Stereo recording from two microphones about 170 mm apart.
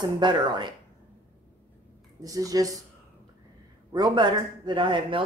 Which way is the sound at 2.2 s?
20° right (ahead or behind).